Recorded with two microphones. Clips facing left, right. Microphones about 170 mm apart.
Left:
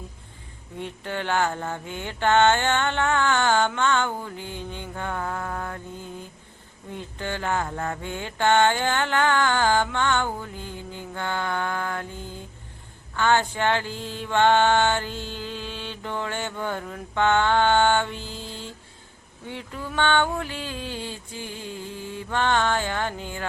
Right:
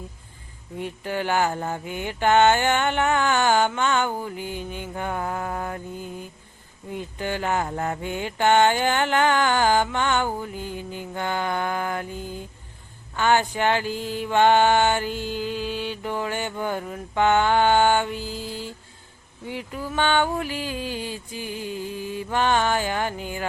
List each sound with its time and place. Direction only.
0.8 s mantra: 10° right (ahead or behind)